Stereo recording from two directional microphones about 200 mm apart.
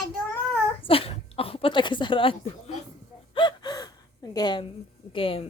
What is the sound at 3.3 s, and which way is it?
Gasp, 20° left (ahead or behind).